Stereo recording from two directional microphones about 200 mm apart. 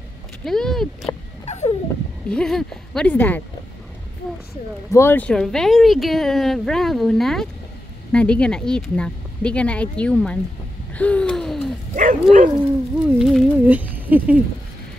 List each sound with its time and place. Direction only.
0.5 s speech: centre (ahead or behind)
1.4 s a sound: 35° left (ahead or behind)
2.2 s speech: 5° left (ahead or behind)
4.9 s speech: 10° left (ahead or behind)
11.0 s gasp: 5° left (ahead or behind)
11.9 s speech: 40° right (ahead or behind)
13.0 s speech: 5° right (ahead or behind)